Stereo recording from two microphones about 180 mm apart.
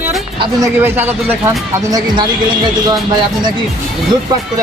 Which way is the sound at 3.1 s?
25° right (ahead or behind).